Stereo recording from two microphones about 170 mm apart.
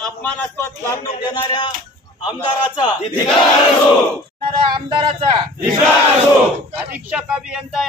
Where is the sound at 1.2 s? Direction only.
25° left (ahead or behind).